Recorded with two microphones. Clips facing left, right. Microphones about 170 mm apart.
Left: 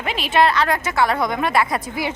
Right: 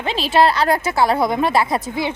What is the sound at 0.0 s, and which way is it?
Speech, 30° right (ahead or behind).